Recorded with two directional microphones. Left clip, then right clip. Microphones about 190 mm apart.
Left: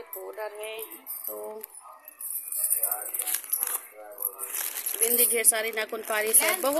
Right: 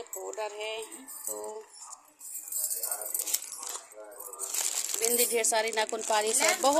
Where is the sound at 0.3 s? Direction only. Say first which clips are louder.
Right 1 dB; 5° right (ahead or behind).